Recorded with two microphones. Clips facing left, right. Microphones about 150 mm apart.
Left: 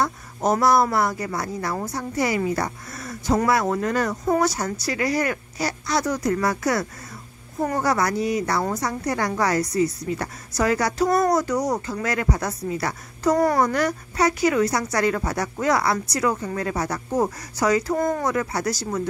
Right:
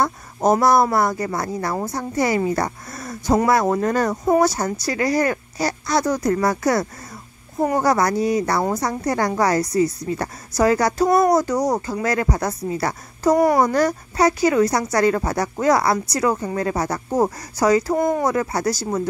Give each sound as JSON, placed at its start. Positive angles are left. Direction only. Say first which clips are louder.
{"t": 0.0, "sound": "a woman's voice", "louder": "right 4 dB", "side_deg": -45}
{"t": 13.3, "sound": "speech", "louder": "right 3 dB", "side_deg": -15}
{"t": 13.7, "sound": "a woman's voice", "louder": "right 4 dB", "side_deg": -35}
{"t": 17.9, "sound": "speech", "louder": "right 3 dB", "side_deg": -15}
{"t": 18.2, "sound": "a woman's voice", "louder": "right 3 dB", "side_deg": -35}